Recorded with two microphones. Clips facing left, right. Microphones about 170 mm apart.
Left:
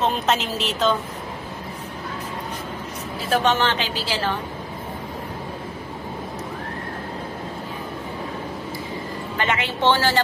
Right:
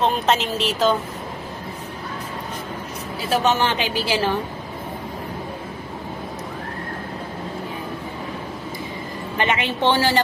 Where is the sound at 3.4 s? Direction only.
10° right (ahead or behind).